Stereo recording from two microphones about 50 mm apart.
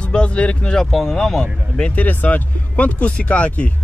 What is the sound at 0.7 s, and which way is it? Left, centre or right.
Speech, centre.